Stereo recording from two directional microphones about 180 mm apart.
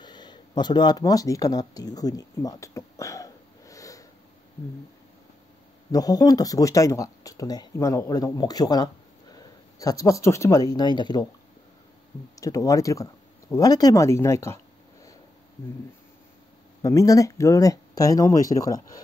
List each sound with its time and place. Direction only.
0.0 s a sound: 25° left (ahead or behind)
5.9 s speech: 20° left (ahead or behind)
12.4 s speech: 20° left (ahead or behind)
16.8 s speech: 20° left (ahead or behind)